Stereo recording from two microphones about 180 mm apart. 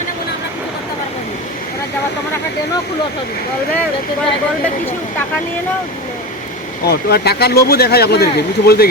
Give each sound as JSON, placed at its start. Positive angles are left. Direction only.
{"t": 6.8, "sound": "speech", "side_deg": 60}